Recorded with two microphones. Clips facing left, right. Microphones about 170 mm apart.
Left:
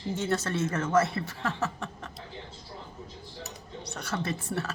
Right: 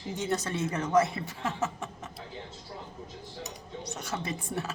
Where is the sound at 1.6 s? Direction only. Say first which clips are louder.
Even; 20° right (ahead or behind).